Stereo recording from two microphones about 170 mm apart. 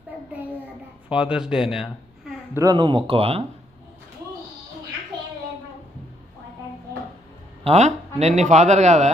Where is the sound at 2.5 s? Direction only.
20° right (ahead or behind).